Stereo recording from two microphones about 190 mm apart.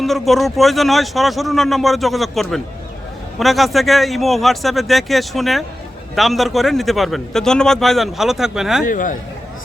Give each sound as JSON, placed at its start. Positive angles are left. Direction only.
{"t": 0.0, "sound": "a man's voice", "side_deg": 0}
{"t": 8.9, "sound": "speech", "side_deg": 45}